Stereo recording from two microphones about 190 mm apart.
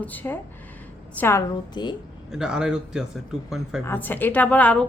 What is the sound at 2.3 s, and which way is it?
Speech, 5° right (ahead or behind).